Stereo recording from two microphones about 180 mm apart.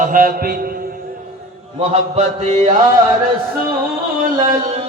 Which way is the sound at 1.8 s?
35° right (ahead or behind).